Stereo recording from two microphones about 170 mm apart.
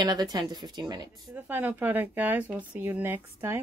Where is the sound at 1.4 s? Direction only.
10° right (ahead or behind).